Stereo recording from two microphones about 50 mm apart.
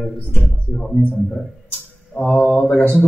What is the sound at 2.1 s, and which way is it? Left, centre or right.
Mantra, left.